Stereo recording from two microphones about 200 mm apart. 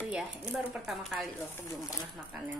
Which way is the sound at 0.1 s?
5° right (ahead or behind).